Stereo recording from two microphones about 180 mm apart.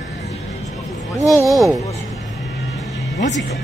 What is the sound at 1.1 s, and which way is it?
Speech, 15° left (ahead or behind).